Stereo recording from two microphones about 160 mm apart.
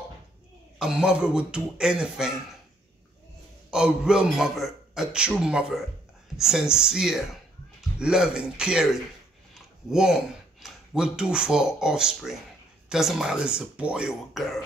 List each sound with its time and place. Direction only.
0.7 s a man's voice: 5° right (ahead or behind)
3.7 s a man's voice: 5° right (ahead or behind)